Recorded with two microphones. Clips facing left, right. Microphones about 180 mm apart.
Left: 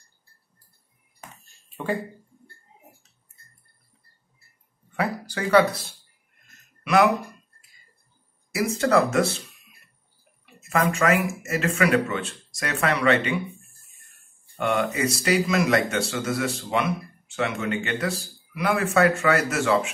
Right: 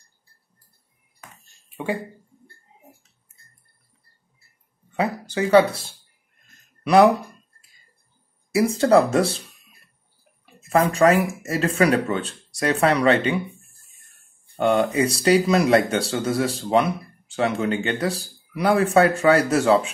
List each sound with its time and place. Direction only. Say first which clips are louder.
4.9 s speech: right 4 dB; 25° right (ahead or behind)
6.8 s a sound: right 5 dB; 30° right (ahead or behind)
8.5 s speech: right 5 dB; 30° right (ahead or behind)
10.9 s speech: right 5 dB; 35° right (ahead or behind)
14.6 s speech: right 5 dB; 30° right (ahead or behind)